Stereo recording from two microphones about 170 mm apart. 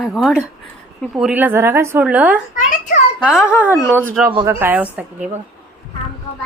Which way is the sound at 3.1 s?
5° right (ahead or behind).